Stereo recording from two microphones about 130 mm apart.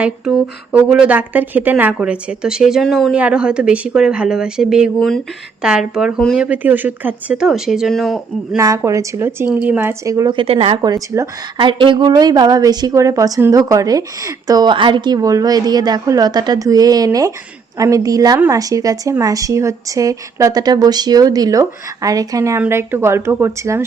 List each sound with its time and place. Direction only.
0.0 s a woman's voice: 10° right (ahead or behind)
8.5 s a woman's voice: 25° right (ahead or behind)
10.3 s speech: 45° right (ahead or behind)
10.8 s a woman's voice: 25° right (ahead or behind)
11.5 s a woman's voice: 40° right (ahead or behind); by 23.8 s 20° right (ahead or behind)